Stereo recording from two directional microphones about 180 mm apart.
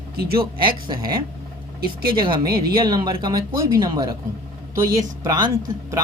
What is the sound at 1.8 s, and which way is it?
Speech, 55° right (ahead or behind).